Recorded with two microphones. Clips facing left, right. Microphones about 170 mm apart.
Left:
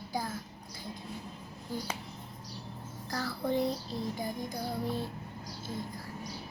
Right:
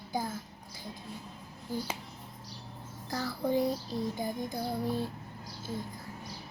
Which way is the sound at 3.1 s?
20° right (ahead or behind).